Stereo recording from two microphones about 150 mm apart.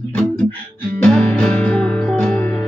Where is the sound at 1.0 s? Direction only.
10° left (ahead or behind).